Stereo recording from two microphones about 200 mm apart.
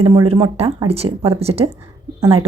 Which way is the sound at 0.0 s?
25° right (ahead or behind).